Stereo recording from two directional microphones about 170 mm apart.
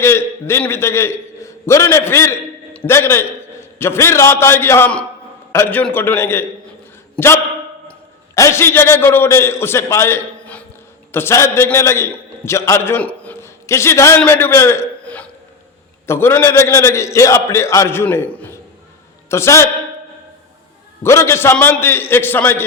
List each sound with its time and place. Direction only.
0.0 s a man's voice: 15° left (ahead or behind)
8.4 s a man's voice: 15° left (ahead or behind)
21.0 s a man's voice: 15° left (ahead or behind)